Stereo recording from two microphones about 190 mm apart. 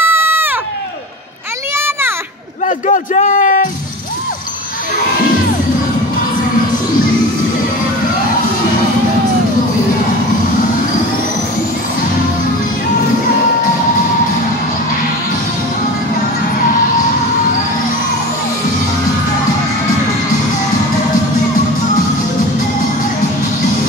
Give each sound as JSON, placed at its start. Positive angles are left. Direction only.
{"t": 0.0, "sound": "sheep", "side_deg": -10}
{"t": 1.8, "sound": "children playing", "side_deg": -10}
{"t": 2.6, "sound": "a sound", "side_deg": 40}